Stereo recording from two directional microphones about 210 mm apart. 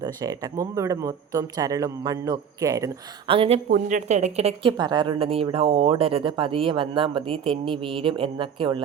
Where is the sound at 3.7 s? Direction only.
40° right (ahead or behind); by 8.8 s 25° right (ahead or behind).